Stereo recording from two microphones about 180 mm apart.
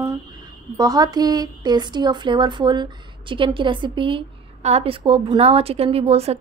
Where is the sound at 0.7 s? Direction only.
20° right (ahead or behind).